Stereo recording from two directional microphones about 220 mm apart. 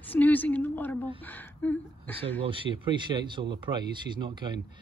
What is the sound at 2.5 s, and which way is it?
A man's voice, 20° right (ahead or behind).